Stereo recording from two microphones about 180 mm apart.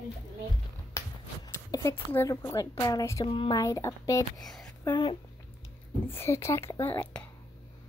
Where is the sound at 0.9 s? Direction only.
15° left (ahead or behind).